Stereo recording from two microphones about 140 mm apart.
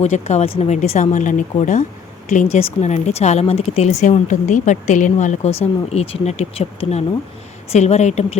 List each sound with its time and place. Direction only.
0.0 s a woman's voice: 55° left (ahead or behind)